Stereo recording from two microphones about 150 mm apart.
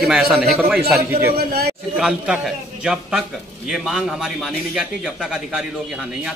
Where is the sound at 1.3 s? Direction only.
90° right.